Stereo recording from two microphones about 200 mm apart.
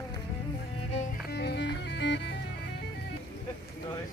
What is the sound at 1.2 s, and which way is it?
Music, 55° left (ahead or behind).